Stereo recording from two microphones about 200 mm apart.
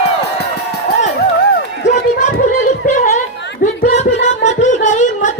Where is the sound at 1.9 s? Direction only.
35° left (ahead or behind).